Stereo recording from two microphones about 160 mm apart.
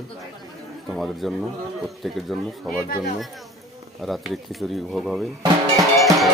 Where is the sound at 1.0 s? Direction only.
Centre (ahead or behind).